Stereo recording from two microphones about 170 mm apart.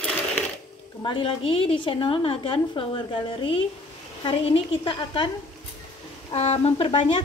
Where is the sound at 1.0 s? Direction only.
30° left (ahead or behind).